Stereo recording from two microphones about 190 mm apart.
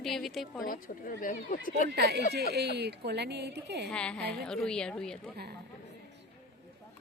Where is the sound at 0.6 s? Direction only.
45° left (ahead or behind).